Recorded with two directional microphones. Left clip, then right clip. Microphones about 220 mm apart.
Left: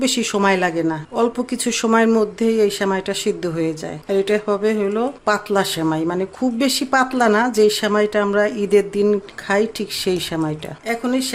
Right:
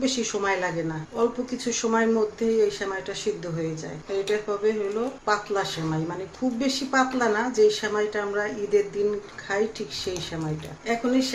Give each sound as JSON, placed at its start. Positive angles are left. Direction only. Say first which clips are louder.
{"t": 0.0, "sound": "speech", "louder": "left 8 dB", "side_deg": 55}